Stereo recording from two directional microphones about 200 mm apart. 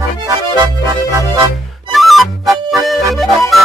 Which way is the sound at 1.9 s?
Centre (ahead or behind).